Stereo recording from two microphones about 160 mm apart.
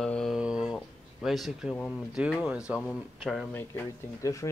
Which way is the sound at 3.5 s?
15° left (ahead or behind).